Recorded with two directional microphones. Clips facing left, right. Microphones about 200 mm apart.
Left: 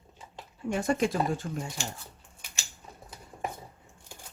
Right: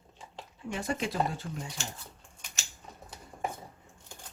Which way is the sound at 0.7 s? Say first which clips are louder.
Left 6 dB; 45° left (ahead or behind).